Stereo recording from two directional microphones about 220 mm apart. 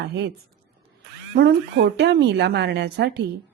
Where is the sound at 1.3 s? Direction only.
50° right (ahead or behind).